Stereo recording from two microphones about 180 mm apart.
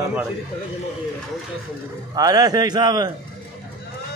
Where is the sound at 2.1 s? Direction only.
20° right (ahead or behind).